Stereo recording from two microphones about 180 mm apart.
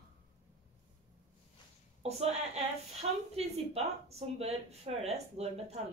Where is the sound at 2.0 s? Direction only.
35° right (ahead or behind).